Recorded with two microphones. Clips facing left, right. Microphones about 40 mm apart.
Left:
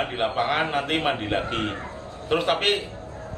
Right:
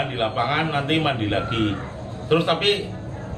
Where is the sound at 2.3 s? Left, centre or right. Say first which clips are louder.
Right 3 dB; centre.